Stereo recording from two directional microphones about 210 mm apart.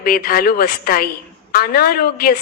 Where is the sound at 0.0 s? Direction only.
45° left (ahead or behind).